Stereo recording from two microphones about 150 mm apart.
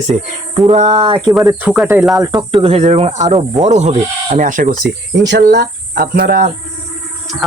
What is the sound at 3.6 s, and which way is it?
Speech, 50° right (ahead or behind).